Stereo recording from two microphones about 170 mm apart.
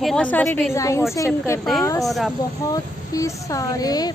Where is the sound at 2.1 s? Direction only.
Centre (ahead or behind).